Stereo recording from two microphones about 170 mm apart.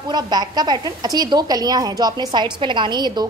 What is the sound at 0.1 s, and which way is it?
A woman's voice, 25° right (ahead or behind).